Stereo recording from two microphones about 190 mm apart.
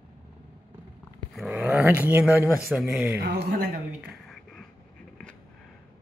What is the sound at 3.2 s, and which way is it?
Speech, 60° right (ahead or behind).